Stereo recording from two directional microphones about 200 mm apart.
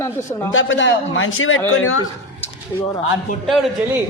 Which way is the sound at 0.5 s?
75° left (ahead or behind).